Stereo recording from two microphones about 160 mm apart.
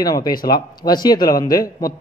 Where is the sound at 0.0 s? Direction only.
25° left (ahead or behind).